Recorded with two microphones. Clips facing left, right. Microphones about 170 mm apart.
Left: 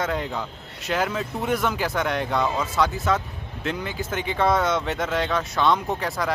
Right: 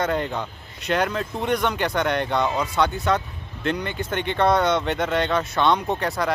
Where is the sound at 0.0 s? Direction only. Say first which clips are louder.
Right 2 dB; centre (ahead or behind).